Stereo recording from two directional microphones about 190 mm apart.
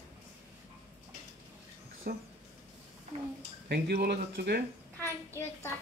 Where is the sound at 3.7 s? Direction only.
55° right (ahead or behind).